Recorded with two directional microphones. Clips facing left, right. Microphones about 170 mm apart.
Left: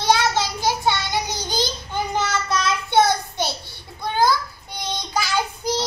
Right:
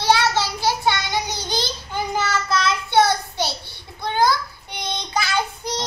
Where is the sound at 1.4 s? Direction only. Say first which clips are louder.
Left 1 dB; 10° left (ahead or behind).